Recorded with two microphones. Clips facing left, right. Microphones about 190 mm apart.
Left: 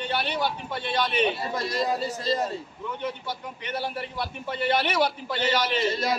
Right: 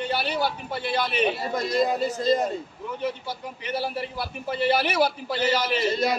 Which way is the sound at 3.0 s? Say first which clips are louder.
Right 4 dB; 5° right (ahead or behind).